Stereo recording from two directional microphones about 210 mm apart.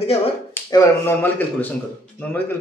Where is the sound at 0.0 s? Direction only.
30° left (ahead or behind).